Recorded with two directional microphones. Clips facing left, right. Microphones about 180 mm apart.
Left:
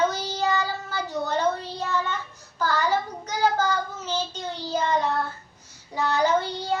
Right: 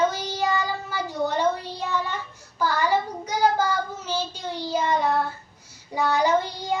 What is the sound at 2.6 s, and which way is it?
Child singing, 10° right (ahead or behind).